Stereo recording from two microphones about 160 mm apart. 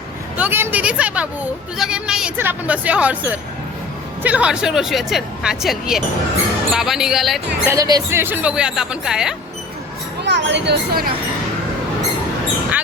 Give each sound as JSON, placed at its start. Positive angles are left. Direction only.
{"t": 0.3, "sound": "speech", "side_deg": -10}
{"t": 7.6, "sound": "speech", "side_deg": -20}
{"t": 10.2, "sound": "speech", "side_deg": -90}